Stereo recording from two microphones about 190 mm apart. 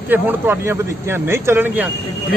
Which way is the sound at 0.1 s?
10° right (ahead or behind).